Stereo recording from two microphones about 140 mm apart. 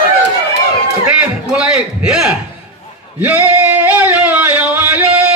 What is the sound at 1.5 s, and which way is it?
Speech, 5° right (ahead or behind).